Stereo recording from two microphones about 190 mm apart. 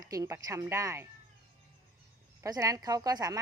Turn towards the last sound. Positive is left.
turn(degrees=-20)  # may be behind; listen again after turning